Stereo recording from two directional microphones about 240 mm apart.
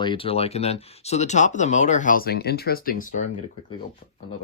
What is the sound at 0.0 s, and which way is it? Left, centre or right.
Speech, left.